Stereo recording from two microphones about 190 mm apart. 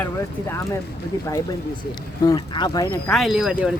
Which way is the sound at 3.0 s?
Centre (ahead or behind).